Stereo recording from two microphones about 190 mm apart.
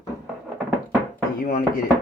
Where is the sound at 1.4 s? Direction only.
50° left (ahead or behind).